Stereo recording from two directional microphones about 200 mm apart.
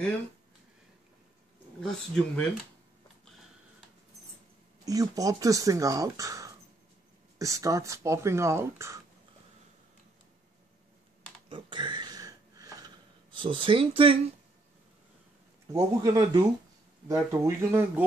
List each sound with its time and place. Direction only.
1.8 s speech: centre (ahead or behind)
4.8 s speech: 15° right (ahead or behind)
11.4 s a sound: 25° right (ahead or behind)
13.4 s speech: 25° right (ahead or behind)
15.7 s speech: 15° right (ahead or behind)